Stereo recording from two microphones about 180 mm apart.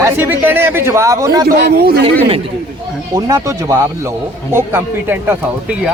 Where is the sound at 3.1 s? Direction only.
20° right (ahead or behind).